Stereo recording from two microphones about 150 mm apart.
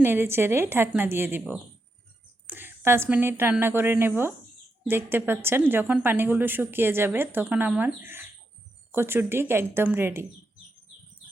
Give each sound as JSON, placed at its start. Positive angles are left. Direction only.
{"t": 0.0, "sound": "speech", "side_deg": -15}